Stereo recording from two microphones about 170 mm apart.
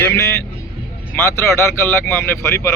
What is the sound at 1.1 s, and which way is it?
Speech, 15° left (ahead or behind).